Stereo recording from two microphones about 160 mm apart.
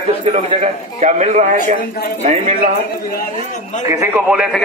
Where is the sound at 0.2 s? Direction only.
35° right (ahead or behind).